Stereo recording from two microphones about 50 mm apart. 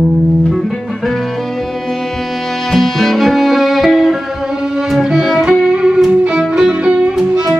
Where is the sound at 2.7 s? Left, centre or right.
Centre.